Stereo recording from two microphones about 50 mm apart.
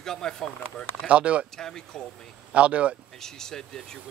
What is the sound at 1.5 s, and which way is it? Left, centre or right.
Speech, centre.